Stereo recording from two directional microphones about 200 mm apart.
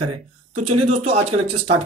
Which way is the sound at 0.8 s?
35° right (ahead or behind).